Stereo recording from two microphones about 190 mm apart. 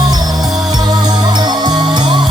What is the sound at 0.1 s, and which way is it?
Music, 20° right (ahead or behind).